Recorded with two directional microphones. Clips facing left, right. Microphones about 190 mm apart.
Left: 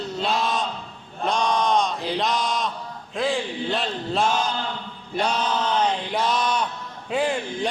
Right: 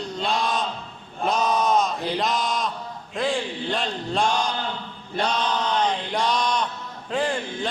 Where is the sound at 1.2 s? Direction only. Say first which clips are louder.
Even; 5° right (ahead or behind).